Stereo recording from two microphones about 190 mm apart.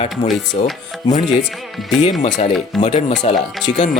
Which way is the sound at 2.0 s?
40° left (ahead or behind).